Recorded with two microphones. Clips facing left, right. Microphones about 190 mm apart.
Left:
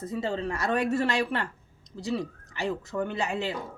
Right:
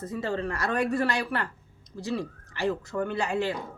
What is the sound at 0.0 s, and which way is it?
Speech, 20° left (ahead or behind).